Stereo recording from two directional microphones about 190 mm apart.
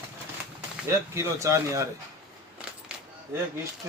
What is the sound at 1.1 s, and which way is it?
Speech, 15° right (ahead or behind).